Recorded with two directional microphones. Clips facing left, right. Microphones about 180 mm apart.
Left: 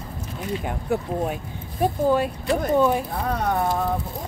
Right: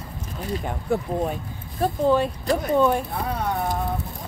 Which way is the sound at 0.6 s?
5° left (ahead or behind).